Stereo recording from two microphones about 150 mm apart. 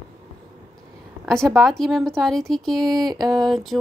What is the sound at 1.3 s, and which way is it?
Speech, centre (ahead or behind).